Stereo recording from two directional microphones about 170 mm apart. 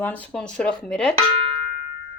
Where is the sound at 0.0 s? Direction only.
10° left (ahead or behind).